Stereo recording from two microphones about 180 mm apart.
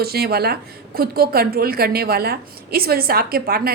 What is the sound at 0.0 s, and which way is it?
A woman's voice, 60° right (ahead or behind).